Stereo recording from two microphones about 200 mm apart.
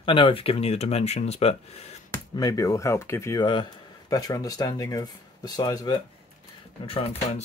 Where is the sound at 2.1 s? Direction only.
20° left (ahead or behind).